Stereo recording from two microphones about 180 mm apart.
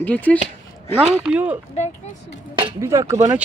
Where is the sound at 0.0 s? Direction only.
10° left (ahead or behind).